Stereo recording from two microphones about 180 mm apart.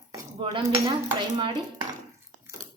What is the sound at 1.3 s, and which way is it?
Dishes, 25° right (ahead or behind).